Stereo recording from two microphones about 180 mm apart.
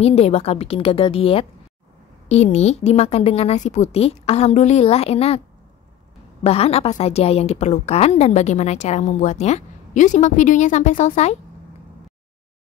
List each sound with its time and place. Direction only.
0.0 s a woman's voice: 35° left (ahead or behind)
6.4 s a woman's voice: 35° left (ahead or behind)